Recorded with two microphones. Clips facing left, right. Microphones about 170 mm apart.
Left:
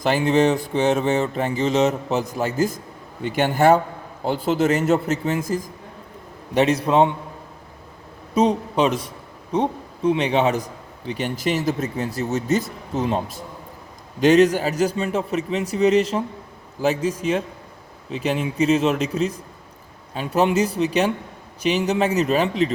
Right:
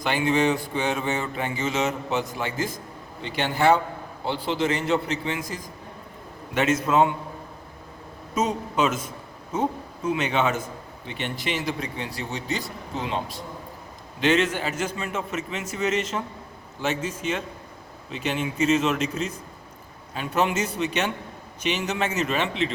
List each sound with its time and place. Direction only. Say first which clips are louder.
0.0 s mantra: left 5 dB; 40° left (ahead or behind)
3.2 s a man's voice: left 6 dB; 45° left (ahead or behind)
6.5 s mantra: left 4 dB; 35° left (ahead or behind)
8.4 s a man's voice: left 5 dB; 35° left (ahead or behind)
12.9 s mantra: left 7 dB; 40° left (ahead or behind)